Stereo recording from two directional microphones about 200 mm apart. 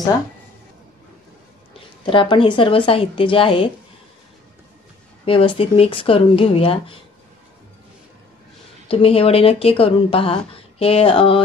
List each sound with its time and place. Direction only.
2.0 s speech: 25° left (ahead or behind)
5.2 s speech: 25° left (ahead or behind)
8.8 s speech: 30° left (ahead or behind)